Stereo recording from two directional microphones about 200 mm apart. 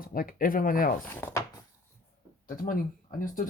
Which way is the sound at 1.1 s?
10° left (ahead or behind).